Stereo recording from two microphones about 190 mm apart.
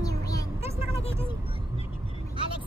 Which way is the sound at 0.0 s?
20° left (ahead or behind).